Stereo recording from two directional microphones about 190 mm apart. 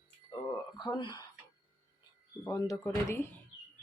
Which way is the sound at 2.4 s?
15° left (ahead or behind).